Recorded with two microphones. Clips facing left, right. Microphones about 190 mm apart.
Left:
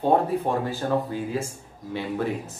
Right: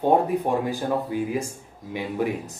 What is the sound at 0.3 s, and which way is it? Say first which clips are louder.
Speech: right 2 dB; 15° right (ahead or behind).